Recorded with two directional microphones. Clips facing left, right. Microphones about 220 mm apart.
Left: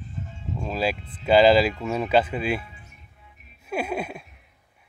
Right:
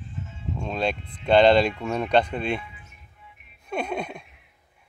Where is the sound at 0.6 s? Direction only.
5° left (ahead or behind).